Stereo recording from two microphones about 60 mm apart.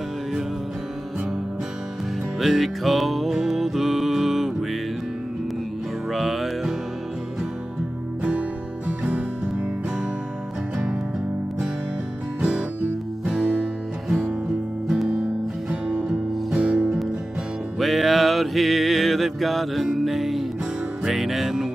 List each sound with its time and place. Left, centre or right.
2.3 s music: centre
6.1 s music: centre
8.2 s music: right
12.4 s music: centre
16.1 s music: centre
17.7 s music: centre